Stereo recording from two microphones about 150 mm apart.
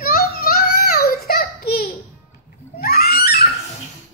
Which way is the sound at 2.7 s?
90° left.